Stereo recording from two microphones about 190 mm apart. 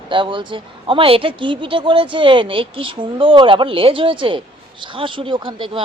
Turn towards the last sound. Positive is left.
turn(degrees=-25)  # may be behind; listen again after turning